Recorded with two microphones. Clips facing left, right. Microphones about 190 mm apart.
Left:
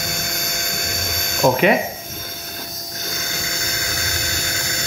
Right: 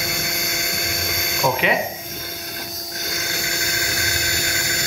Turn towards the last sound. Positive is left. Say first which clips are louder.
# right 1 dB
turn(degrees=-15)  # may be behind; listen again after turning